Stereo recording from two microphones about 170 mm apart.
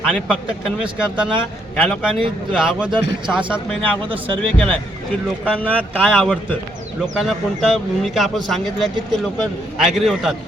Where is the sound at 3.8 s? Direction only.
30° right (ahead or behind).